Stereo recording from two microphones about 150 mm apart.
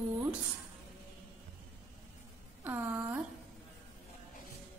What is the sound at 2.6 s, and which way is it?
Speech, 15° right (ahead or behind).